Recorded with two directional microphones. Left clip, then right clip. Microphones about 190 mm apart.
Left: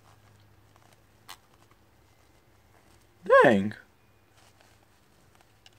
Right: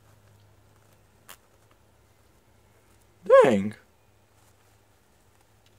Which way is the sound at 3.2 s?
Centre (ahead or behind).